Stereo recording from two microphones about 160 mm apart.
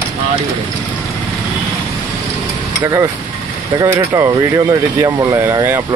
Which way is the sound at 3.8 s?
20° right (ahead or behind).